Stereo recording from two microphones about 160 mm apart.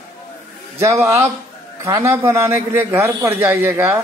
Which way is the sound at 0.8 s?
20° right (ahead or behind).